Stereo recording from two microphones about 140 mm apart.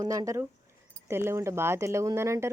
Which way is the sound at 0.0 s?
25° right (ahead or behind).